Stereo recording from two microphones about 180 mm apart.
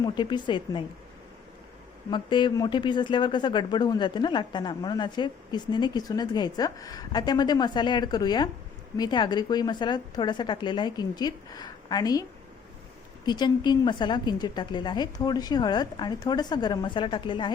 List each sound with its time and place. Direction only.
0.0 s speech: 25° left (ahead or behind)
2.0 s speech: 25° left (ahead or behind)
13.2 s speech: 25° left (ahead or behind)